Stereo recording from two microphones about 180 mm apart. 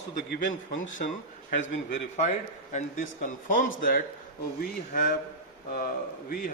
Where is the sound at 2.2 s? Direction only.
40° left (ahead or behind).